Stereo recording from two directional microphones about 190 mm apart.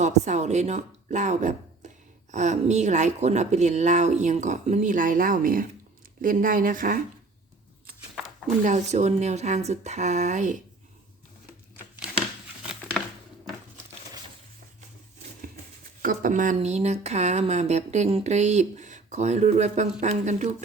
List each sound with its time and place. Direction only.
0.0 s speech: 35° right (ahead or behind)
8.6 s speech: 40° right (ahead or behind)
16.0 s a sound: 45° right (ahead or behind)
16.6 s speech: 35° right (ahead or behind)